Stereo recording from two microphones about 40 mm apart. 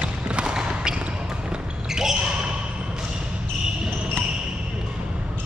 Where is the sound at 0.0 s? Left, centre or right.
Right.